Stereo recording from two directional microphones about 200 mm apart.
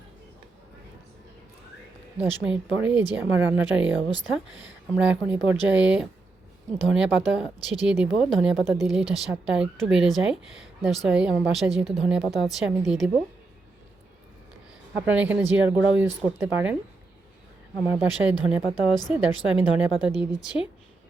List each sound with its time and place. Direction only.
2.2 s speech: 5° right (ahead or behind)
4.1 s speech: 70° right (ahead or behind)
4.9 s speech: 5° right (ahead or behind)
14.9 s speech: 5° right (ahead or behind)
17.8 s speech: 10° right (ahead or behind)